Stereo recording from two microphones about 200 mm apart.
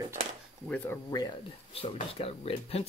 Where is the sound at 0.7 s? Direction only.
10° left (ahead or behind).